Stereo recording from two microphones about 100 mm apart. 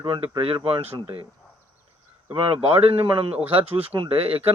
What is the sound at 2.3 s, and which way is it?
Speech, 70° right (ahead or behind).